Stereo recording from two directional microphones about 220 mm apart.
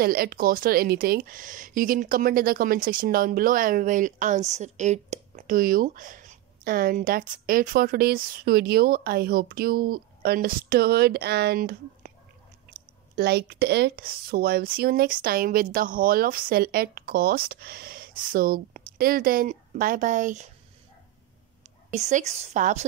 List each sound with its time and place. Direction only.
0.0 s speech: 40° right (ahead or behind)
13.1 s speech: 45° right (ahead or behind)
21.9 s speech: 30° right (ahead or behind)